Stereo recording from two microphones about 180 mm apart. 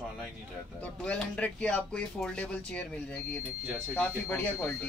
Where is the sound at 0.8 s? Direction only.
5° left (ahead or behind).